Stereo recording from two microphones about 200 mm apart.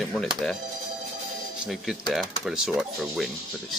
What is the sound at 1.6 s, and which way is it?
Speech, centre (ahead or behind).